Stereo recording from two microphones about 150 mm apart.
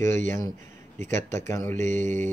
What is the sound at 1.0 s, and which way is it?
Speech, 20° left (ahead or behind).